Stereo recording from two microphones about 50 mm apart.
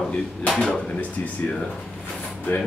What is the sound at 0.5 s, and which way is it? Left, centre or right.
Speech, centre.